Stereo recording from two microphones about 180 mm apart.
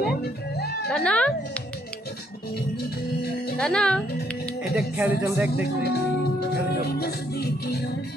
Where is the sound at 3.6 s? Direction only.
5° left (ahead or behind).